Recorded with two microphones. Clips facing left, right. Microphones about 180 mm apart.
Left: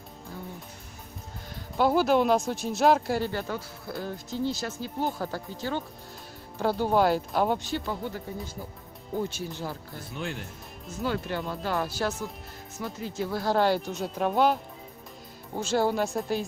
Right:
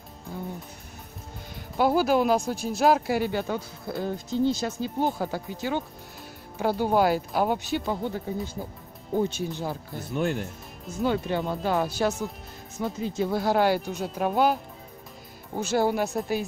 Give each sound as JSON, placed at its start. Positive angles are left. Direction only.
{"t": 1.8, "sound": "speech", "side_deg": -5}
{"t": 7.8, "sound": "speech", "side_deg": -20}
{"t": 9.3, "sound": "speech", "side_deg": -20}
{"t": 10.1, "sound": "speech", "side_deg": -45}
{"t": 11.0, "sound": "speech", "side_deg": -20}